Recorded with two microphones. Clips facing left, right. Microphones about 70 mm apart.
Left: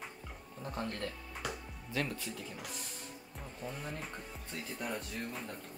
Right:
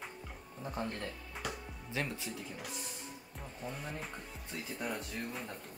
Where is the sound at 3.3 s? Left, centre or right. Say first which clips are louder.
Even; centre.